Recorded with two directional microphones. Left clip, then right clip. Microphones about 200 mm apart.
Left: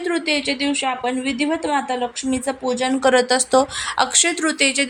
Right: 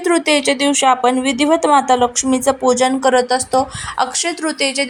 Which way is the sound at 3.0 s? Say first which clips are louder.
Right 2 dB; 10° left (ahead or behind).